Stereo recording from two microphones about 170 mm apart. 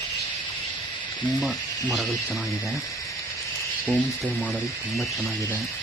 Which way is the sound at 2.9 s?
20° left (ahead or behind).